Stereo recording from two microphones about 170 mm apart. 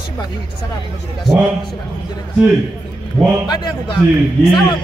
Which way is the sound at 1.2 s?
Centre (ahead or behind).